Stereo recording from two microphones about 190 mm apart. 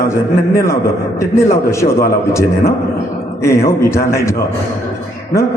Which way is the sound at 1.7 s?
15° left (ahead or behind).